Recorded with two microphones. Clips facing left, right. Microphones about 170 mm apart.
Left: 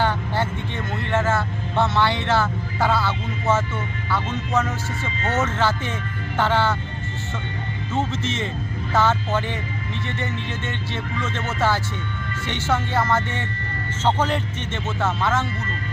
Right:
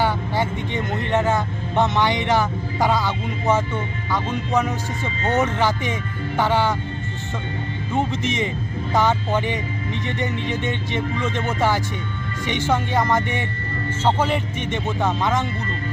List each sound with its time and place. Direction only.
0.0 s vehicle: 10° right (ahead or behind)
4.1 s speech: 15° right (ahead or behind)
7.9 s speech: 15° right (ahead or behind)